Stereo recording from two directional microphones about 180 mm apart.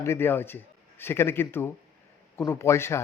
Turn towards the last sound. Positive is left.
turn(degrees=15)  # may be behind; listen again after turning